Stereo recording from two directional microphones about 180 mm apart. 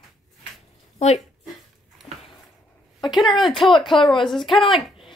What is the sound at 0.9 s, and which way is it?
Speech, 40° left (ahead or behind).